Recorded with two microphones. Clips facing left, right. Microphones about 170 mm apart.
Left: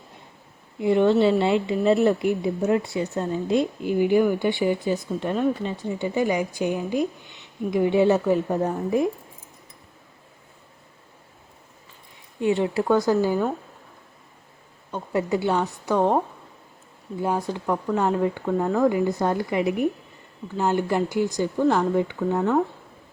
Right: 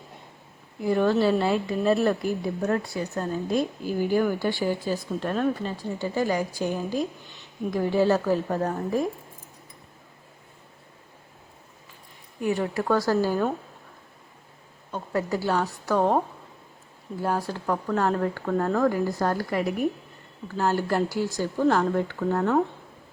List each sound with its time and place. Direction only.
0.8 s a woman's voice: 25° left (ahead or behind)
12.4 s a woman's voice: 25° left (ahead or behind)
14.9 s a woman's voice: 20° left (ahead or behind)
17.2 s a woman's voice: 20° left (ahead or behind)
20.7 s a woman's voice: 20° left (ahead or behind)
21.6 s speech: 5° left (ahead or behind)